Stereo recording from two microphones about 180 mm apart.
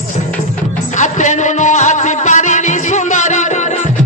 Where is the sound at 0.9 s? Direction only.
40° left (ahead or behind).